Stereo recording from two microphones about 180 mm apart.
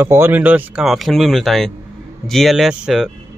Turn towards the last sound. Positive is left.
turn(degrees=-5)  # may be behind; listen again after turning